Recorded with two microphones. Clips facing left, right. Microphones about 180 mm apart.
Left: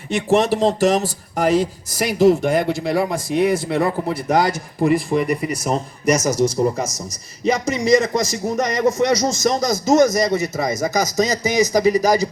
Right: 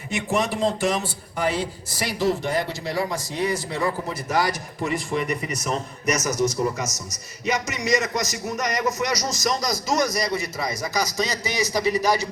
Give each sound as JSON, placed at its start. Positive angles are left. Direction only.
{"t": 0.2, "sound": "speech", "side_deg": 35}
{"t": 4.8, "sound": "a man's voice", "side_deg": 40}
{"t": 10.0, "sound": "speech", "side_deg": 45}